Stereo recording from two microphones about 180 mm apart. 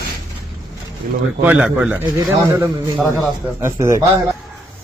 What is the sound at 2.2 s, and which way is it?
A man's voice, 20° right (ahead or behind).